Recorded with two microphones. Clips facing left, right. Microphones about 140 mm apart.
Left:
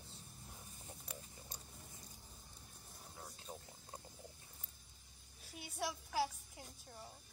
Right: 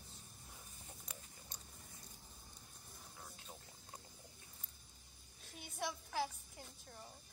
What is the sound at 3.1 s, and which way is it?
Boiling, 15° left (ahead or behind).